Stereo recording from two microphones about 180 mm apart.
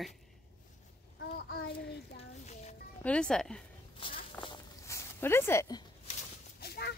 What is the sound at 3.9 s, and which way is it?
Walk, 30° left (ahead or behind).